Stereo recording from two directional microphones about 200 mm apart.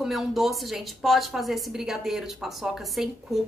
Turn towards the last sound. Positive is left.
turn(degrees=0)  # may be behind; listen again after turning